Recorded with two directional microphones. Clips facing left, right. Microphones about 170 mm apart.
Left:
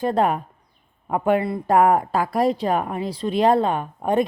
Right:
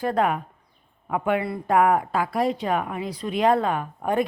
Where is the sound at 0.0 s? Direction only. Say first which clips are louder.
Left 3 dB; 30° left (ahead or behind).